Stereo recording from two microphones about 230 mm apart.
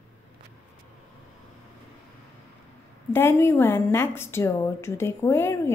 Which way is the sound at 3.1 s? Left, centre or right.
Centre.